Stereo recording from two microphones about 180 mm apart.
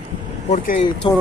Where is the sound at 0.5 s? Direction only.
45° left (ahead or behind).